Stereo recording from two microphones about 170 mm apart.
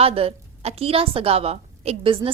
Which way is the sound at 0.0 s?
35° right (ahead or behind).